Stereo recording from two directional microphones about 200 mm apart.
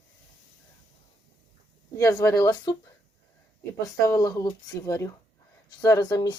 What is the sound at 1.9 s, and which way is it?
Speech, 15° left (ahead or behind).